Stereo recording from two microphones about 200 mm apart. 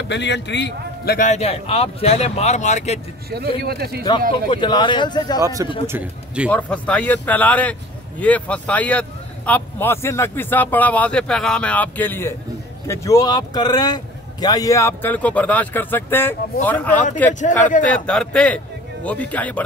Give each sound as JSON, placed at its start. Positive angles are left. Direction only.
{"t": 0.1, "sound": "a man's voice", "side_deg": 60}
{"t": 3.3, "sound": "a man's voice", "side_deg": -50}
{"t": 4.5, "sound": "speech", "side_deg": 25}
{"t": 5.9, "sound": "speech", "side_deg": -10}
{"t": 6.5, "sound": "speech", "side_deg": 5}
{"t": 17.3, "sound": "a man's voice", "side_deg": 40}
{"t": 17.8, "sound": "a man's voice", "side_deg": 5}